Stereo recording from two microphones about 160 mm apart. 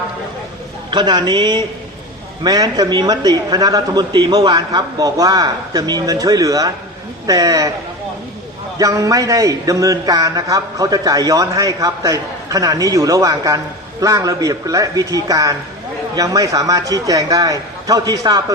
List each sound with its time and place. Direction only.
0.9 s a man's voice: 30° right (ahead or behind)
8.8 s a man's voice: 20° right (ahead or behind)